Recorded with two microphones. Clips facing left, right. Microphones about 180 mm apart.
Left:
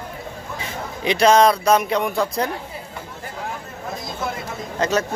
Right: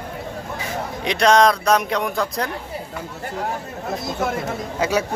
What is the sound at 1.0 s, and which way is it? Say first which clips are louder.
Speech: left 1 dB; centre (ahead or behind).